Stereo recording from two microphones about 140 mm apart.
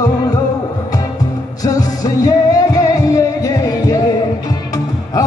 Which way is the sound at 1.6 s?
25° left (ahead or behind).